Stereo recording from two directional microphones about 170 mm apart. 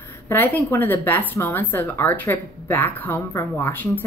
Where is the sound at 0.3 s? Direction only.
10° left (ahead or behind).